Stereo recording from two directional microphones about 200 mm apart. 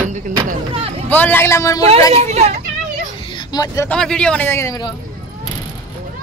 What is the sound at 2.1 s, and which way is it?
Speech, 30° right (ahead or behind).